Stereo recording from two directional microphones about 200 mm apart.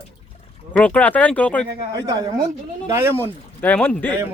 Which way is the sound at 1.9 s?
20° right (ahead or behind).